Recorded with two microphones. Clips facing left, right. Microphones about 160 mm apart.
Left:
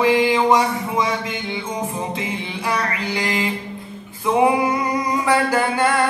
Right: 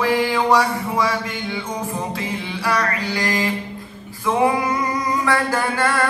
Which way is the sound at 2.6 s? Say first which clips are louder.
Right 2 dB; 20° left (ahead or behind).